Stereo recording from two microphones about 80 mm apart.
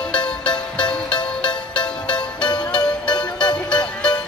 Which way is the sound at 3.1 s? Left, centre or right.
Left.